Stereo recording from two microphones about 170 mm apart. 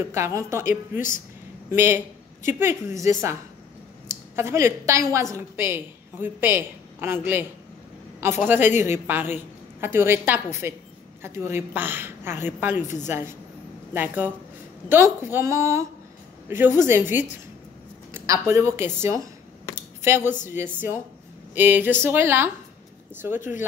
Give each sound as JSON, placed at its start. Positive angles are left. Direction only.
{"t": 0.0, "sound": "a woman's voice", "side_deg": -15}
{"t": 1.7, "sound": "a woman's voice", "side_deg": -15}